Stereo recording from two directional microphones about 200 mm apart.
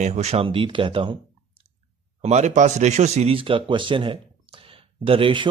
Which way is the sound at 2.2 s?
35° right (ahead or behind).